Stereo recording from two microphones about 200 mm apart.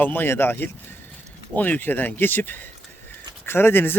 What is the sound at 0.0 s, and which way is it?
Speech, 10° left (ahead or behind).